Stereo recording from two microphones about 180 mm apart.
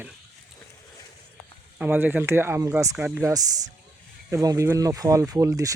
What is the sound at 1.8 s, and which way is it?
Speech, 10° right (ahead or behind).